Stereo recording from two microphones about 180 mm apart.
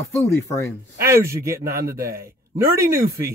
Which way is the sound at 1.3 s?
15° right (ahead or behind).